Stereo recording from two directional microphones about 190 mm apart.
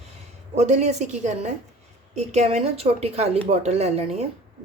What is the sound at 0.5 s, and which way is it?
Speech, 35° right (ahead or behind).